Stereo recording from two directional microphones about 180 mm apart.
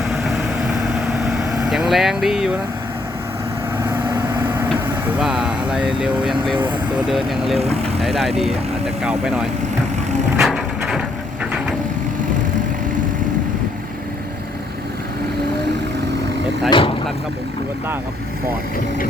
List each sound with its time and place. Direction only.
0.0 s vehicle: 5° right (ahead or behind)
1.7 s speech: centre (ahead or behind)
4.1 s vehicle: 15° right (ahead or behind)
5.2 s speech: 5° right (ahead or behind)
6.3 s speech: 25° right (ahead or behind)
7.1 s speech: centre (ahead or behind)
7.5 s speech: 35° right (ahead or behind)
8.0 s speech: centre (ahead or behind)
10.3 s ratchet: centre (ahead or behind)
16.6 s speech: 30° left (ahead or behind)